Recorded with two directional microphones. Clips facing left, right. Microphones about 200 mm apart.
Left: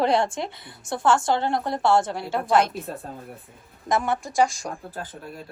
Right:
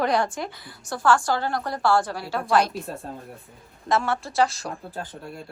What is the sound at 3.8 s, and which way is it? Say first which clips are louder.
Speech: even; 15° left (ahead or behind).